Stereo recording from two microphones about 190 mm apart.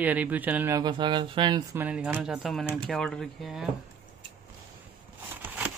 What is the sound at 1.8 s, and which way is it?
Speech, 10° right (ahead or behind).